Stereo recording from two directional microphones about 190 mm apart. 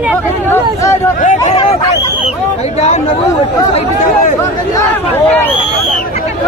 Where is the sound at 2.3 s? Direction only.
35° left (ahead or behind).